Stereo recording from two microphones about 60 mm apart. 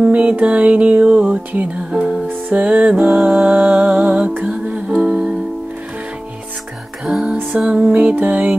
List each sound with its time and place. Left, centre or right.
0.0 s music: right
7.1 s music: centre